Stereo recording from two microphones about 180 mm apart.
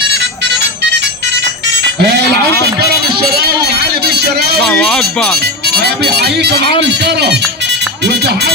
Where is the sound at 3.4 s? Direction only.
60° right (ahead or behind).